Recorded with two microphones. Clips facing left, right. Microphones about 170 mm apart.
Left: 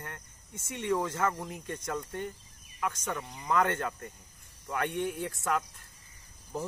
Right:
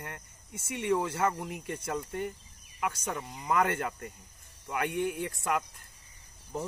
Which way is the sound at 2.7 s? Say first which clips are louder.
Even; 20° right (ahead or behind).